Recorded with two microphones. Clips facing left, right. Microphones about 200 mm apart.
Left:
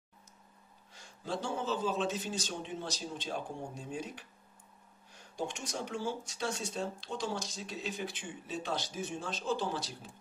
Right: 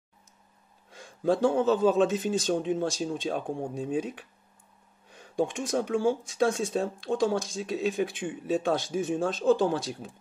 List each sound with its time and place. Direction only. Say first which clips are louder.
0.9 s speech: right 13 dB; 55° right (ahead or behind)